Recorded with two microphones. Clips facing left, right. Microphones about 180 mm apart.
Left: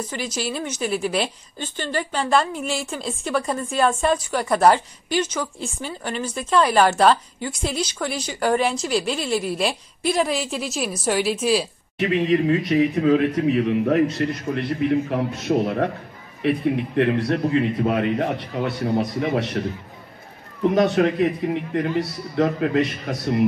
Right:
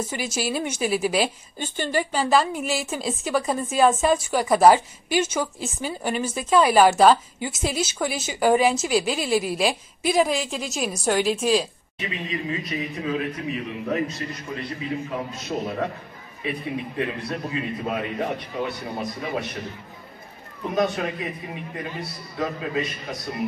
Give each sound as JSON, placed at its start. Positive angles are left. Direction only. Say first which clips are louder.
{"t": 0.0, "sound": "a woman's voice", "louder": "even", "side_deg": -10}
{"t": 12.0, "sound": "a man's voice", "louder": "left 11 dB", "side_deg": 70}
{"t": 20.7, "sound": "a man's voice", "louder": "left 5 dB", "side_deg": 75}